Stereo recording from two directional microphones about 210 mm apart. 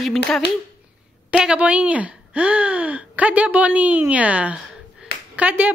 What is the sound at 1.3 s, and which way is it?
Speech, 5° right (ahead or behind).